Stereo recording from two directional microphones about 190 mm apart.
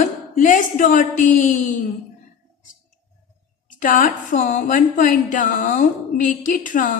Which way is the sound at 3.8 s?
45° left (ahead or behind).